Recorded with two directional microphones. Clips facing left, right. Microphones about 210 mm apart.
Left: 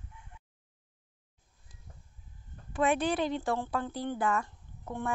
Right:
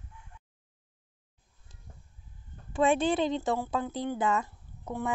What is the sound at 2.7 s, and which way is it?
Speech, 25° right (ahead or behind).